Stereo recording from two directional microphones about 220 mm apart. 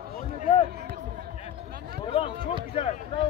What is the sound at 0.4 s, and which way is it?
Basketball bounce, 25° left (ahead or behind).